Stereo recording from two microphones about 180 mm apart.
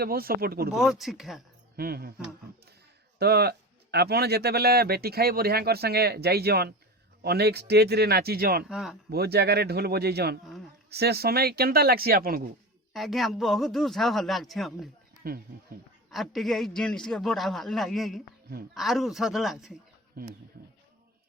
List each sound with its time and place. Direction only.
0.0 s speech: 55° right (ahead or behind)
0.7 s a man's voice: centre (ahead or behind)
1.7 s speech: 60° right (ahead or behind)
3.2 s speech: 65° right (ahead or behind)
8.7 s a man's voice: 5° right (ahead or behind)
9.0 s speech: 60° right (ahead or behind)
12.9 s a man's voice: centre (ahead or behind)
16.0 s a man's voice: centre (ahead or behind)
20.2 s speech: 60° right (ahead or behind)